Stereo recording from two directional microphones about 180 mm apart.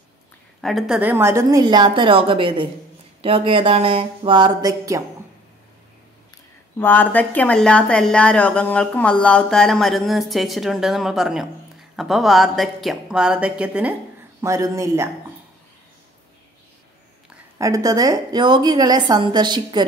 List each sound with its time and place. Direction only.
0.6 s a woman's voice: centre (ahead or behind); by 5.0 s 20° right (ahead or behind)
6.8 s speech: 10° left (ahead or behind); by 15.0 s 15° right (ahead or behind)
17.6 s a woman's voice: 20° right (ahead or behind)